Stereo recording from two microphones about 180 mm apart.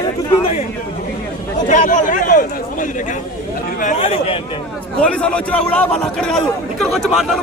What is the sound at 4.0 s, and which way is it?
Speech, 30° left (ahead or behind).